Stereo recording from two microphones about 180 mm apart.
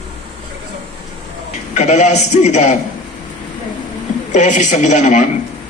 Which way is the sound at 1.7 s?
40° left (ahead or behind).